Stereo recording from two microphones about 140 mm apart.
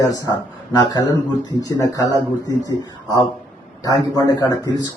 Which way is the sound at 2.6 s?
25° left (ahead or behind).